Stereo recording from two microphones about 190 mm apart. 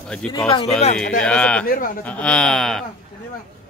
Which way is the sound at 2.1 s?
5° left (ahead or behind).